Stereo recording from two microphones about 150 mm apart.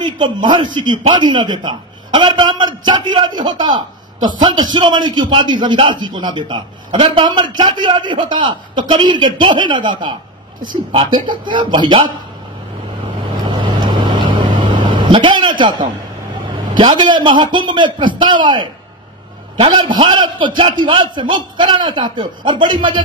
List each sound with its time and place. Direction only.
0.0 s a man's voice: 30° right (ahead or behind)
13.5 s vehicle: 35° right (ahead or behind)
16.7 s a man's voice: 30° right (ahead or behind)